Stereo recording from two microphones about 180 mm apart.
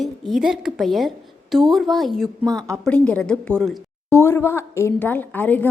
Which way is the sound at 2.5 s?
20° right (ahead or behind).